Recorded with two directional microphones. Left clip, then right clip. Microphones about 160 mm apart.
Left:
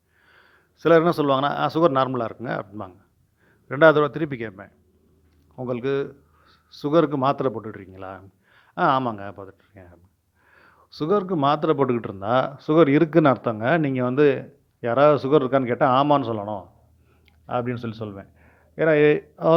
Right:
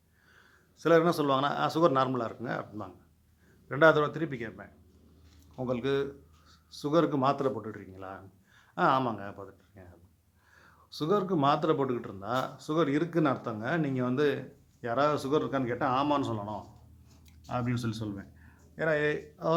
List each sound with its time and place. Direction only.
0.3 s a man's voice: 40° left (ahead or behind)
5.5 s a man's voice: 30° left (ahead or behind)